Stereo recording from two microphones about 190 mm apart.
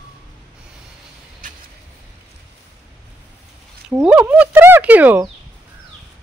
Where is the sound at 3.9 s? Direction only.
10° right (ahead or behind).